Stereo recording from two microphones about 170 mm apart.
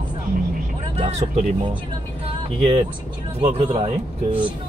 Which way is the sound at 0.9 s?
40° right (ahead or behind).